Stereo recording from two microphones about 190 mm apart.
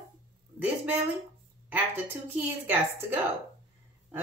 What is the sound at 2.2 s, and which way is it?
Speech, 10° right (ahead or behind).